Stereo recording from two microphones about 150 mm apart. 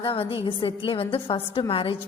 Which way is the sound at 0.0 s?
35° left (ahead or behind).